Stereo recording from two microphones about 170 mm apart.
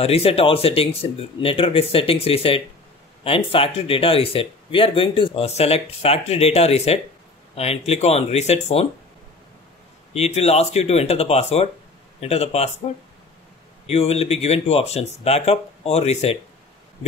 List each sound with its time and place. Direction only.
0.0 s speech: 35° left (ahead or behind)
10.1 s speech: 40° left (ahead or behind)
13.8 s speech: 35° left (ahead or behind)